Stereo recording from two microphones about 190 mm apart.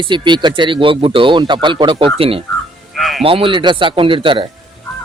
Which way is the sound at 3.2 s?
30° right (ahead or behind).